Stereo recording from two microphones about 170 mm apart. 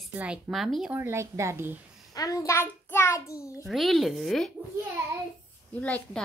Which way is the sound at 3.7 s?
Centre (ahead or behind).